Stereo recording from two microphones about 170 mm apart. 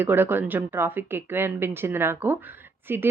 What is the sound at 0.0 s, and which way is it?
A woman's voice, 10° right (ahead or behind).